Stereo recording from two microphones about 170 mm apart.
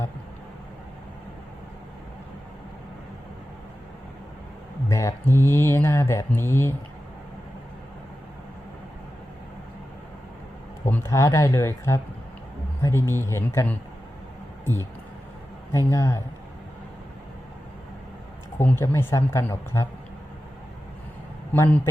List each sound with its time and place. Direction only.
4.9 s speech: 15° left (ahead or behind)
10.8 s speech: 15° left (ahead or behind)
15.9 s speech: 15° left (ahead or behind)
18.5 s speech: 15° left (ahead or behind)
21.5 s a man's voice: 15° left (ahead or behind)